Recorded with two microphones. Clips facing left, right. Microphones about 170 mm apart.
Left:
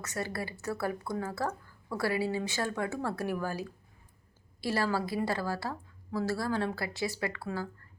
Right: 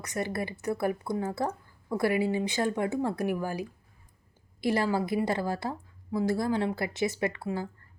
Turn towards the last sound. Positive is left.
turn(degrees=-20)  # may be behind; listen again after turning